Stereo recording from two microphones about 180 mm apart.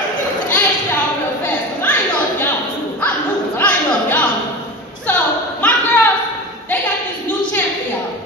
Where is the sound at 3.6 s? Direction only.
10° left (ahead or behind).